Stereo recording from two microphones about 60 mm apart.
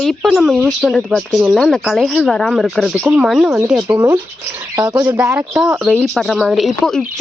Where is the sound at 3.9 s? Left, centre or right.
Right.